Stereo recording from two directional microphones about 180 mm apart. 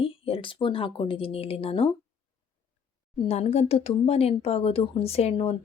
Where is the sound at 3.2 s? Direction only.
35° left (ahead or behind).